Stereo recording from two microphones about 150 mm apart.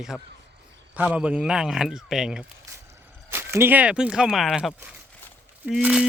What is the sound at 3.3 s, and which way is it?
Speech, 15° right (ahead or behind).